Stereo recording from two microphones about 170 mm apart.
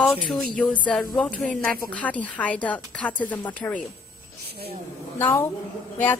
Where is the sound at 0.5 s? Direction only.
10° left (ahead or behind).